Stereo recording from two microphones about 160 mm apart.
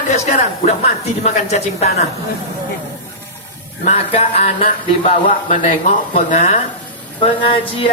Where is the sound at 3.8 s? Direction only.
40° left (ahead or behind).